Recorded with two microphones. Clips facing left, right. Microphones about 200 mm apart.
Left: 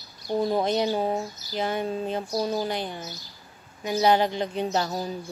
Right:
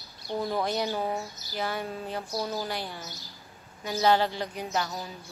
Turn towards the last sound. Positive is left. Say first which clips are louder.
# left 5 dB
turn(degrees=35)  # may be behind; listen again after turning